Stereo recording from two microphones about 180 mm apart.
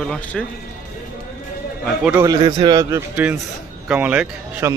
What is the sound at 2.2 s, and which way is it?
A man's voice, 20° right (ahead or behind).